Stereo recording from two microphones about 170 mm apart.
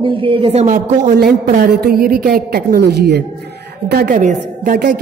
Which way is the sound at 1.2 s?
65° right (ahead or behind).